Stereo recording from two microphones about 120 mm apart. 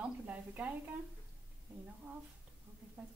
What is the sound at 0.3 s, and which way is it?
Speech, 10° right (ahead or behind).